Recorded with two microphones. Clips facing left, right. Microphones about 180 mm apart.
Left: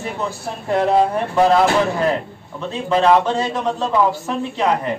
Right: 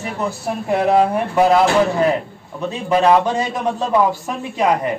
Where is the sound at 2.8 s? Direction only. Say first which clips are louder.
Right 1 dB; 15° right (ahead or behind).